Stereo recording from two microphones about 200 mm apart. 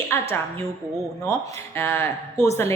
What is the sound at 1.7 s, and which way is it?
Speech, 10° left (ahead or behind).